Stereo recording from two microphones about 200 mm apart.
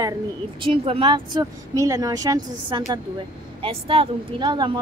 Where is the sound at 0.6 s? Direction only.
25° right (ahead or behind).